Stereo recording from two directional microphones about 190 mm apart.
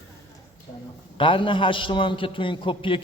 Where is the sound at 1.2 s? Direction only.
25° left (ahead or behind).